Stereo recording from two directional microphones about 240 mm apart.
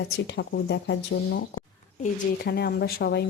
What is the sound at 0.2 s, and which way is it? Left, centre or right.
A woman's voice, left.